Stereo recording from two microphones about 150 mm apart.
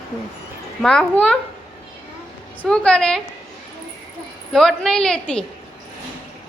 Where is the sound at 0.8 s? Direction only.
5° left (ahead or behind).